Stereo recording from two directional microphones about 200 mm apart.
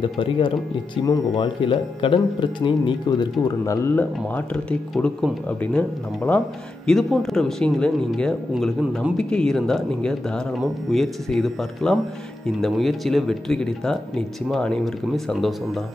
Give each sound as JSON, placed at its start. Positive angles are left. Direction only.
{"t": 0.0, "sound": "speech", "side_deg": 25}